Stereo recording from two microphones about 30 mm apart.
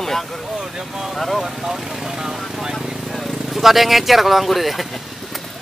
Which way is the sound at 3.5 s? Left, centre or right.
Centre.